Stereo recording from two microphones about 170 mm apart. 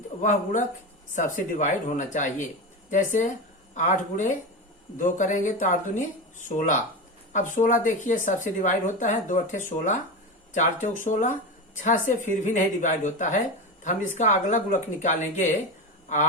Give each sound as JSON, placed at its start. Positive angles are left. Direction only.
{"t": 0.2, "sound": "speech", "side_deg": 45}